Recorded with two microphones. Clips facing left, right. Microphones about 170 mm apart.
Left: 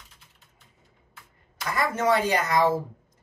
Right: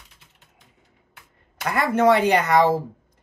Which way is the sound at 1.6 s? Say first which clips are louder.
Right 6 dB; 65° right (ahead or behind).